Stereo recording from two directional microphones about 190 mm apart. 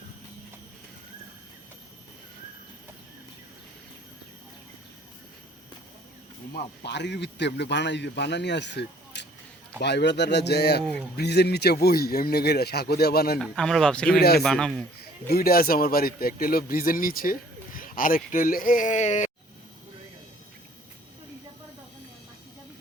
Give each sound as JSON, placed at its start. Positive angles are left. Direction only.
{"t": 6.8, "sound": "a man's voice", "side_deg": 65}
{"t": 13.4, "sound": "speech", "side_deg": 0}
{"t": 14.2, "sound": "a man's voice", "side_deg": 55}
{"t": 14.4, "sound": "speech", "side_deg": 5}
{"t": 15.3, "sound": "speech", "side_deg": 50}